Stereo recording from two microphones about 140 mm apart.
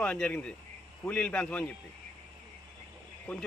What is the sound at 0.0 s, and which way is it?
Speech, 10° left (ahead or behind).